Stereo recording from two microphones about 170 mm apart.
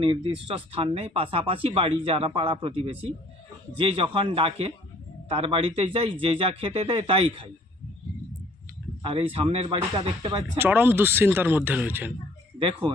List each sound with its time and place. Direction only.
0.0 s speech: 30° right (ahead or behind)
9.0 s a sound: 30° right (ahead or behind)
9.3 s speech: 35° right (ahead or behind)
10.6 s speech: 10° right (ahead or behind)
12.5 s speech: 30° right (ahead or behind)